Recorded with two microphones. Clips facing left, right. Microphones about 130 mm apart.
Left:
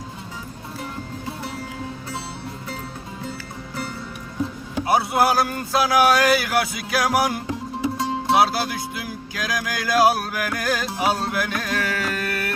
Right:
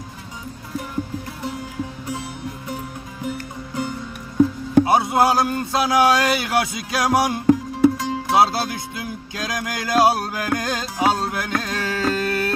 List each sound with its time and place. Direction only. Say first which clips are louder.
4.9 s speech: right 2 dB; 20° right (ahead or behind)
7.9 s music: left 1 dB; 25° left (ahead or behind)
8.4 s speech: right 4 dB; 25° right (ahead or behind)
10.9 s music: right 2 dB; 25° right (ahead or behind)